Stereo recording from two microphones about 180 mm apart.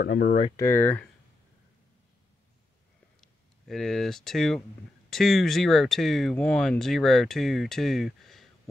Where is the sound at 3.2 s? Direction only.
Centre (ahead or behind).